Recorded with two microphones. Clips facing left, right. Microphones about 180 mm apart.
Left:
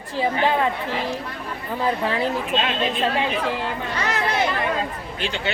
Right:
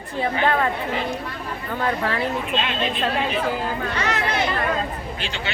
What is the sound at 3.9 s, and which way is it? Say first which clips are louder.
Speech: left 1 dB; 35° left (ahead or behind).